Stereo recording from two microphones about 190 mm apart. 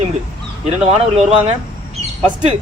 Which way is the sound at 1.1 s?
30° right (ahead or behind).